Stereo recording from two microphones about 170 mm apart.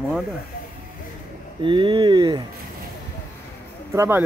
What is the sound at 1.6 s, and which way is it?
Speech, 30° right (ahead or behind).